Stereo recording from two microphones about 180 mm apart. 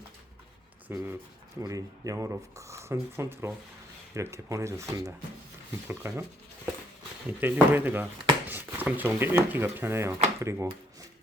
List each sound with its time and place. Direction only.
0.9 s speech: 15° right (ahead or behind)
7.3 s speech: 10° right (ahead or behind)